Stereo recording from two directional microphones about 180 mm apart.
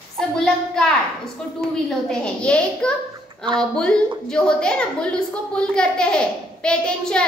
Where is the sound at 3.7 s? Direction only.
5° left (ahead or behind).